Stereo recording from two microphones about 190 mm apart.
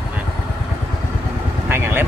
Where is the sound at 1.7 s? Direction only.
10° right (ahead or behind).